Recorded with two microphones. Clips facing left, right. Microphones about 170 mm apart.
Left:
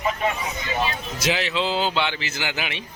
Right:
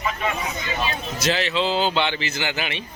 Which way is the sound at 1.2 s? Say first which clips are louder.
Right 1 dB; 10° left (ahead or behind).